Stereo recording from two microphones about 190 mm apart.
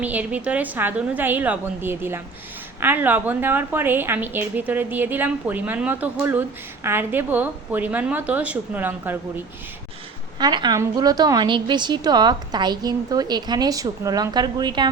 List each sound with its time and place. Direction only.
0.0 s a woman's voice: 10° right (ahead or behind)
10.3 s a woman's voice: 25° right (ahead or behind)